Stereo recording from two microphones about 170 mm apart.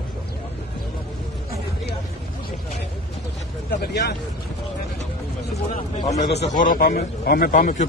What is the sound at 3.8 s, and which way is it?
Speech, 75° left (ahead or behind).